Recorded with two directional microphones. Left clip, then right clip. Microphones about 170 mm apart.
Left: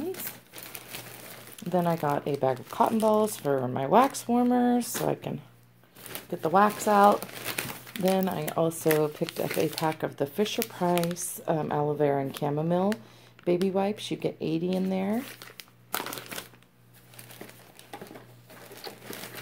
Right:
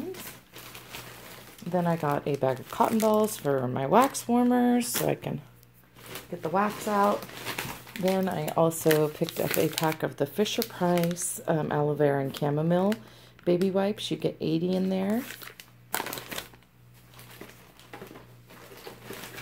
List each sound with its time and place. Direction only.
0.9 s a sound: 60° left (ahead or behind)
1.7 s speech: 15° left (ahead or behind)
6.4 s speech: 40° left (ahead or behind)
7.5 s crumpling: 60° left (ahead or behind)
8.3 s speech: 5° left (ahead or behind)
15.1 s crumpling: 20° left (ahead or behind)